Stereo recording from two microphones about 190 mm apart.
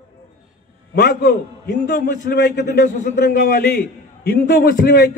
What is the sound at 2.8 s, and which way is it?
A man's voice, 45° left (ahead or behind).